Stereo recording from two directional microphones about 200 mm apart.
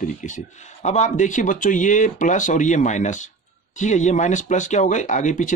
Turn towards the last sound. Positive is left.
turn(degrees=40)  # may be behind; listen again after turning